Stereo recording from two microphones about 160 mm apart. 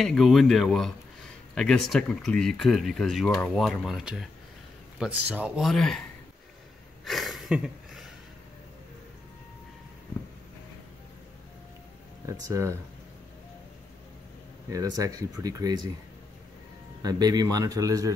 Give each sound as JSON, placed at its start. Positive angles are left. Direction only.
{"t": 0.0, "sound": "speech", "side_deg": 0}
{"t": 7.1, "sound": "speech", "side_deg": 0}
{"t": 12.3, "sound": "a man's voice", "side_deg": -20}
{"t": 14.7, "sound": "a man's voice", "side_deg": -20}
{"t": 17.0, "sound": "a man's voice", "side_deg": -25}